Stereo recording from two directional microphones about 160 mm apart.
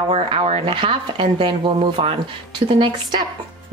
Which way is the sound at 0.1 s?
40° right (ahead or behind).